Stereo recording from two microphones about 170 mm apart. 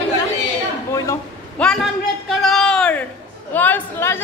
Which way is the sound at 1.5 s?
5° left (ahead or behind).